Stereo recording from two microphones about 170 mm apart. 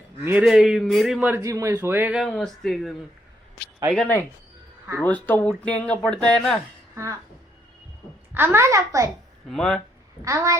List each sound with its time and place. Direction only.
0.3 s a man's voice: 5° right (ahead or behind)
1.4 s speech: 20° right (ahead or behind); by 2.9 s centre (ahead or behind)
3.9 s speech: 5° left (ahead or behind)
6.9 s speech: 15° right (ahead or behind)
8.3 s speech: 15° right (ahead or behind)
9.5 s a man's voice: centre (ahead or behind)
10.2 s speech: 20° right (ahead or behind)